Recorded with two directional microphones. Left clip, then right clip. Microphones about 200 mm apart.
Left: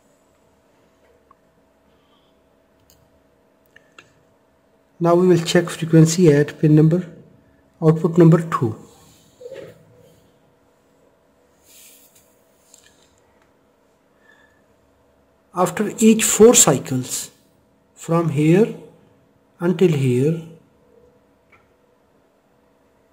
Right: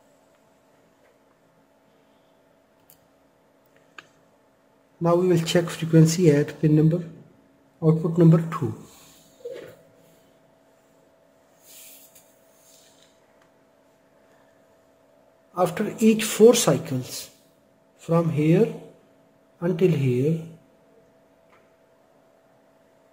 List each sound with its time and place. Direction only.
5.0 s speech: 25° left (ahead or behind)
15.5 s speech: 30° left (ahead or behind)